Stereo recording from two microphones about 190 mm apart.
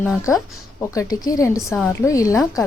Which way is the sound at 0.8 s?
20° left (ahead or behind).